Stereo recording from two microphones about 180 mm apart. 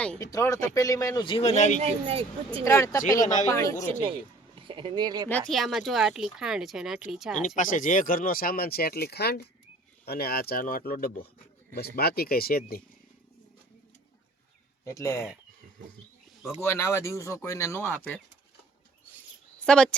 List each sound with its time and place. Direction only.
0.2 s speech: 20° left (ahead or behind); by 1.8 s 40° left (ahead or behind)
1.8 s speech: 35° right (ahead or behind)
2.6 s speech: 15° left (ahead or behind)
4.0 s speech: 30° right (ahead or behind)
5.3 s speech: centre (ahead or behind)
7.3 s speech: 45° left (ahead or behind)
14.8 s speech: 15° left (ahead or behind)
16.6 s speech: 15° left (ahead or behind)
19.5 s a woman's voice: 5° left (ahead or behind)